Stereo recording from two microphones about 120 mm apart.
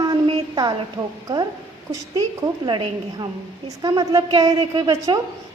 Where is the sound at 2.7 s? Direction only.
40° right (ahead or behind).